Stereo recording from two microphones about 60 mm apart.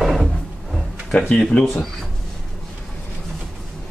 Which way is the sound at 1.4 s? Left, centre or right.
Centre.